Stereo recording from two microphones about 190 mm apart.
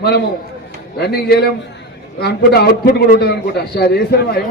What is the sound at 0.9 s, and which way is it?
A man's voice, 60° left (ahead or behind).